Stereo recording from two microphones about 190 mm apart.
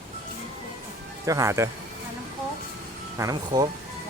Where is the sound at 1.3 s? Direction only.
15° right (ahead or behind).